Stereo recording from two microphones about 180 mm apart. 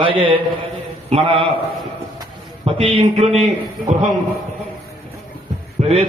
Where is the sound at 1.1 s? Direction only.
30° right (ahead or behind).